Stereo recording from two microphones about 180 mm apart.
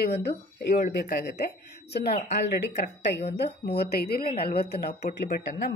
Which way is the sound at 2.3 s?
70° left (ahead or behind).